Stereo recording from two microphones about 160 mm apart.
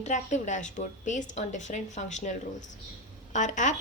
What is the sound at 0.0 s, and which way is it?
A woman's voice, 45° left (ahead or behind).